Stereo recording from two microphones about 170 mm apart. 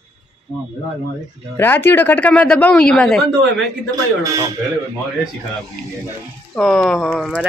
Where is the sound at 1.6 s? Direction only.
10° left (ahead or behind).